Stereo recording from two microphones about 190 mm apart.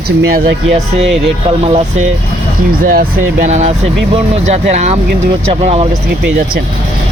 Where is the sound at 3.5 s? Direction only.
40° right (ahead or behind).